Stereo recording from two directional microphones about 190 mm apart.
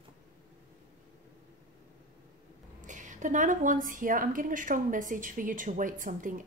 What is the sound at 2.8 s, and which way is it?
A woman's voice, 40° right (ahead or behind).